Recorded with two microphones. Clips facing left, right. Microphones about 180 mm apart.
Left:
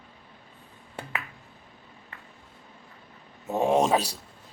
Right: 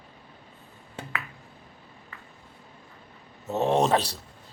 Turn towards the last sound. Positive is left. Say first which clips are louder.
# even
turn(degrees=10)  # may be behind; listen again after turning